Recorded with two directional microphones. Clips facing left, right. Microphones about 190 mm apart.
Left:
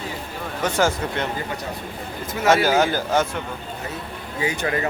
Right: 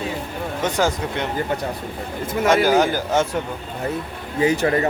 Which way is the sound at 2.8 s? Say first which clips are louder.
Right 1 dB; 15° right (ahead or behind).